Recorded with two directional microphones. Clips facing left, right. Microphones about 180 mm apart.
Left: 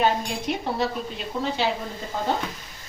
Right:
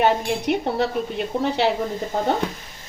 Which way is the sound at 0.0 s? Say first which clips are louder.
Right 4 dB; 65° right (ahead or behind).